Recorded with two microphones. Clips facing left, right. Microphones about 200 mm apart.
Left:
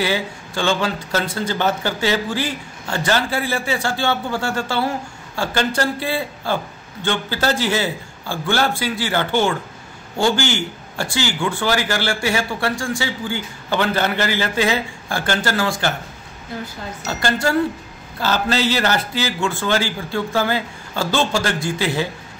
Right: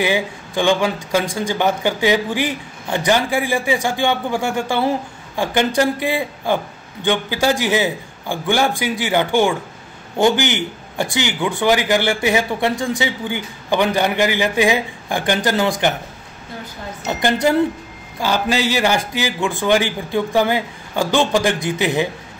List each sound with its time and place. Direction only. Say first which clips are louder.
0.0 s speech: right 2 dB; 15° right (ahead or behind)
17.1 s speech: right 3 dB; 20° right (ahead or behind)